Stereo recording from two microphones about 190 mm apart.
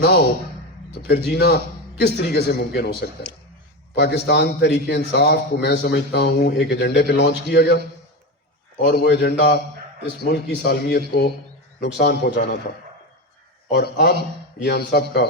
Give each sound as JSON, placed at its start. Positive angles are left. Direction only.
{"t": 0.9, "sound": "a man's voice", "side_deg": 60}
{"t": 8.8, "sound": "a man's voice", "side_deg": 60}
{"t": 13.7, "sound": "a man's voice", "side_deg": 60}